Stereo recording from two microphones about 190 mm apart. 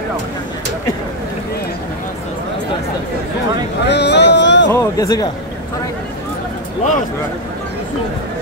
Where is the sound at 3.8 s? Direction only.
65° left (ahead or behind).